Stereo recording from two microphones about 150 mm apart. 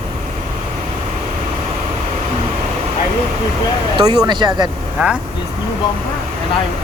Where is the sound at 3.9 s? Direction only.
30° right (ahead or behind).